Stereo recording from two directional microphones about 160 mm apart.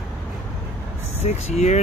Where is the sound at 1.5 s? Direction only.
45° left (ahead or behind).